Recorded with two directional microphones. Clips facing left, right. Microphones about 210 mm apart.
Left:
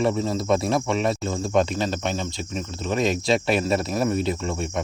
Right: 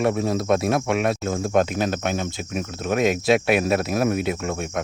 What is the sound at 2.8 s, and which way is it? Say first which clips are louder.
Speech: right 2 dB; 55° right (ahead or behind).